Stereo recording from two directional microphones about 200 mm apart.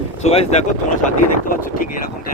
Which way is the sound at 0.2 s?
35° left (ahead or behind).